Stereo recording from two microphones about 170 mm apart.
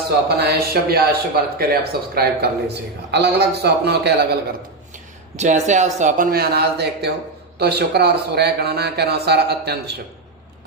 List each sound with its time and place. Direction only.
0.3 s speech: 70° right (ahead or behind)
3.1 s speech: 80° right
5.4 s speech: 45° right (ahead or behind)
6.3 s speech: 70° right (ahead or behind)